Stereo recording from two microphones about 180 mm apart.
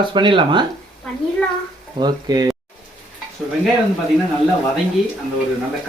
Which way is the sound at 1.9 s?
25° right (ahead or behind).